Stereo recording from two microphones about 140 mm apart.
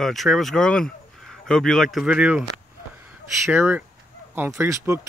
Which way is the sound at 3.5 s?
15° right (ahead or behind).